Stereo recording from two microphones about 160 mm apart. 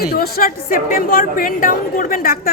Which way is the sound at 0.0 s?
70° left (ahead or behind).